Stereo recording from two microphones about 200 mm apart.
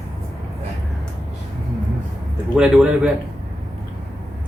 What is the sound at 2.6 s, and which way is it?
Speech, 5° right (ahead or behind).